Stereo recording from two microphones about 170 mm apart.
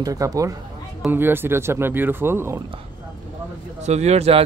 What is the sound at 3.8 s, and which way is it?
Speech, 40° right (ahead or behind).